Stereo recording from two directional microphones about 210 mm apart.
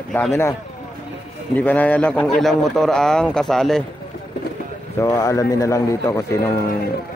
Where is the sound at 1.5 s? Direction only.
5° left (ahead or behind).